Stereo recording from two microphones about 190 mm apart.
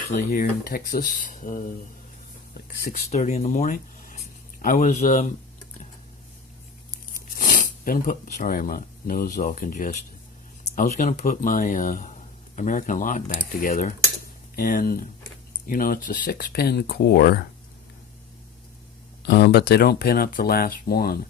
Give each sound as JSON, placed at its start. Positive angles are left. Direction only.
{"t": 0.3, "sound": "speech", "side_deg": 50}
{"t": 3.1, "sound": "speech", "side_deg": 35}
{"t": 7.3, "sound": "speech", "side_deg": 45}
{"t": 19.2, "sound": "speech", "side_deg": 60}